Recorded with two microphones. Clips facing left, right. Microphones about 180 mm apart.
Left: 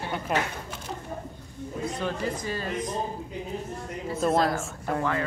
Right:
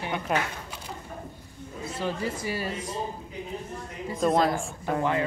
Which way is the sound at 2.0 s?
10° right (ahead or behind).